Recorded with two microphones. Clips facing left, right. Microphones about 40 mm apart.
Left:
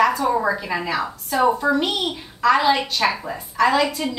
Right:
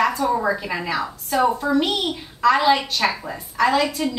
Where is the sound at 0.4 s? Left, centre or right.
Centre.